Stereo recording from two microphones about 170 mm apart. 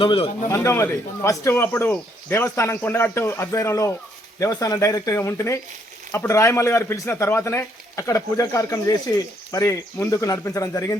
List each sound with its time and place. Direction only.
0.0 s a man's voice: 30° left (ahead or behind)
0.5 s speech: 15° left (ahead or behind)